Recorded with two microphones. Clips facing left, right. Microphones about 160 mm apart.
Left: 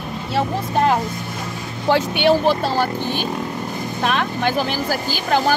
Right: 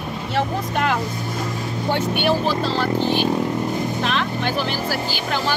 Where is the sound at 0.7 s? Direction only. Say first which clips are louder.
Left 6 dB; 35° left (ahead or behind).